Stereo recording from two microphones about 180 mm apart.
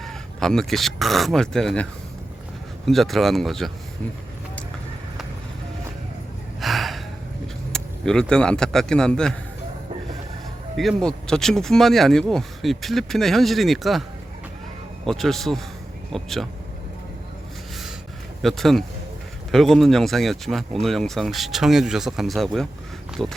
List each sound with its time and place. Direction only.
0.0 s speech: centre (ahead or behind)
6.6 s gasp: centre (ahead or behind)
7.7 s speech: 5° left (ahead or behind)
10.8 s speech: centre (ahead or behind)
15.0 s speech: centre (ahead or behind)
18.4 s speech: centre (ahead or behind)